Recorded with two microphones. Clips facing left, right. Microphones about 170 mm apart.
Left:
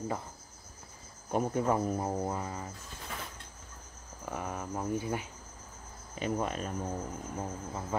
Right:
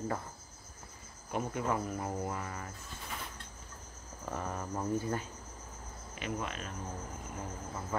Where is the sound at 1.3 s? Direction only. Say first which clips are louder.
Left 5 dB; 35° left (ahead or behind).